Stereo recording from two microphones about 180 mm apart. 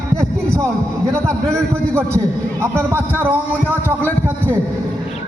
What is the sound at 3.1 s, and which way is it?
Speech, 10° right (ahead or behind).